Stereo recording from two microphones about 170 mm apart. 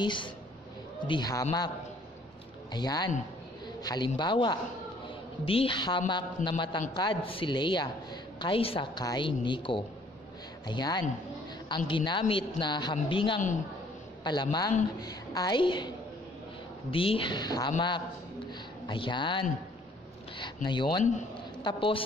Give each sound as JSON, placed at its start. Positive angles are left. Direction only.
{"t": 0.0, "sound": "a woman's voice", "side_deg": 30}
{"t": 2.7, "sound": "a woman's voice", "side_deg": 25}
{"t": 16.9, "sound": "a woman's voice", "side_deg": 30}
{"t": 21.0, "sound": "a man's voice", "side_deg": 45}
{"t": 21.6, "sound": "a woman's voice", "side_deg": 30}